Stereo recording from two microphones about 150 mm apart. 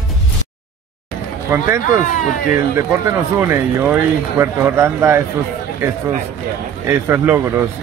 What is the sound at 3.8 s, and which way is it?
A man's voice, 15° right (ahead or behind).